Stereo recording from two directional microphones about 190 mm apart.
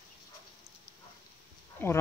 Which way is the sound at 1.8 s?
10° left (ahead or behind).